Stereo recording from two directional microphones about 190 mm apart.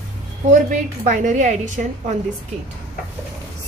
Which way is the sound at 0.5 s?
40° right (ahead or behind).